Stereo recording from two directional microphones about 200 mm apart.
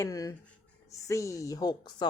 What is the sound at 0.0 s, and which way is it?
Speech, 15° left (ahead or behind).